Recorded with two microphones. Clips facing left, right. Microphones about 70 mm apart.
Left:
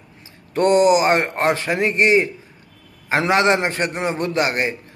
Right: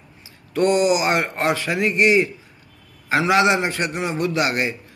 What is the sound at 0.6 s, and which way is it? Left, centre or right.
A man's voice, left.